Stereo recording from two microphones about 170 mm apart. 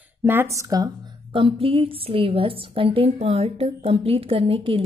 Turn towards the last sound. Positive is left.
turn(degrees=-30)  # may be behind; listen again after turning